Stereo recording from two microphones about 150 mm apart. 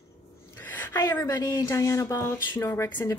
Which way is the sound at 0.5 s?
15° left (ahead or behind).